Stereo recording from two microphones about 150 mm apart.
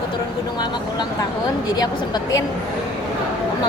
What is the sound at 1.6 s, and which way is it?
Speech, 25° left (ahead or behind).